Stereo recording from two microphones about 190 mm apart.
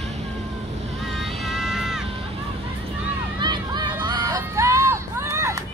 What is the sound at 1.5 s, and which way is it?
Music, centre (ahead or behind).